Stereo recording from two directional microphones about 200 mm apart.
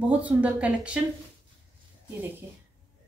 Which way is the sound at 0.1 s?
5° right (ahead or behind).